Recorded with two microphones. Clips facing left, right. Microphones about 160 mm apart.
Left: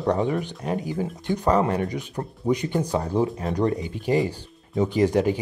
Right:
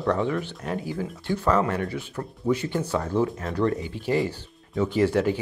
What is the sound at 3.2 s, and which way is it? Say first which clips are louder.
Speech: left 1 dB; 35° left (ahead or behind).